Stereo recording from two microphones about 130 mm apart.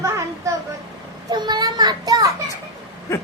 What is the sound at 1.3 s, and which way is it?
A child's voice, 35° right (ahead or behind).